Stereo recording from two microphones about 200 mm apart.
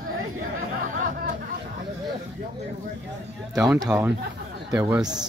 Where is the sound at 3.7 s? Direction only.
15° right (ahead or behind).